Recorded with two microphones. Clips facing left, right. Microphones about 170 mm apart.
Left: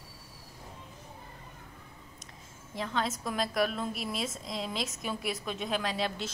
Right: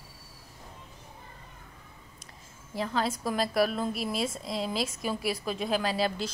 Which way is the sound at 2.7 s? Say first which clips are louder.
Right 3 dB; centre (ahead or behind).